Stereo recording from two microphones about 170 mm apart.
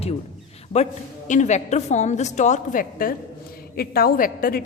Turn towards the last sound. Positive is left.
turn(degrees=60)  # may be behind; listen again after turning